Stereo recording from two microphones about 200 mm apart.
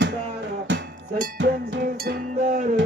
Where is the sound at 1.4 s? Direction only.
60° right (ahead or behind).